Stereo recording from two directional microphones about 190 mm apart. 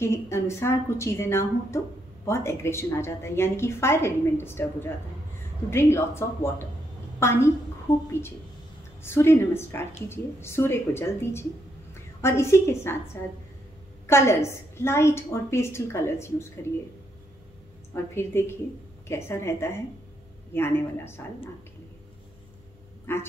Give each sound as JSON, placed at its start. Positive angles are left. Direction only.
{"t": 0.0, "sound": "a woman's voice", "side_deg": 15}
{"t": 9.0, "sound": "a woman's voice", "side_deg": 10}
{"t": 17.9, "sound": "a woman's voice", "side_deg": 10}
{"t": 23.1, "sound": "a woman's voice", "side_deg": 15}